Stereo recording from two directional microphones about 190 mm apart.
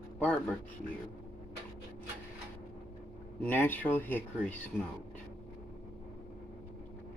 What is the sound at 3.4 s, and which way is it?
Speech, 10° left (ahead or behind).